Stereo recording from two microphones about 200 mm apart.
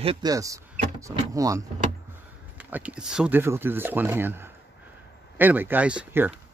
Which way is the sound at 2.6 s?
5° right (ahead or behind).